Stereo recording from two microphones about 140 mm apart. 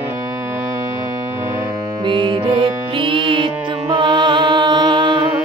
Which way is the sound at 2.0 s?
35° right (ahead or behind).